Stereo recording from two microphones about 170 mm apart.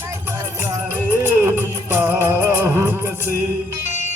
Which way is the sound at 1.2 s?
15° right (ahead or behind).